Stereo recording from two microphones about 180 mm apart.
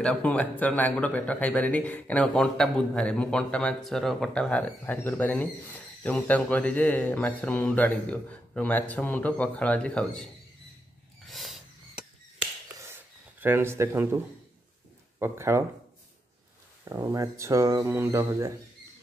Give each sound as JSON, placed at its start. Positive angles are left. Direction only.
{"t": 0.0, "sound": "speech", "side_deg": 5}
{"t": 11.2, "sound": "wild animals", "side_deg": 0}
{"t": 12.8, "sound": "a sound", "side_deg": -10}
{"t": 15.1, "sound": "speech", "side_deg": -15}
{"t": 16.9, "sound": "speech", "side_deg": -15}